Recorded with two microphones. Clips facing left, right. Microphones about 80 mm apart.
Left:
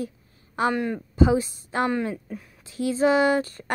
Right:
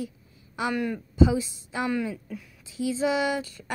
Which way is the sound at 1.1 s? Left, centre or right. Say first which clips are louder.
Left 2 dB; left.